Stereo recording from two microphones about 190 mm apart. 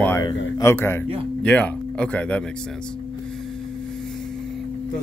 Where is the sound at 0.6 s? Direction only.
15° left (ahead or behind).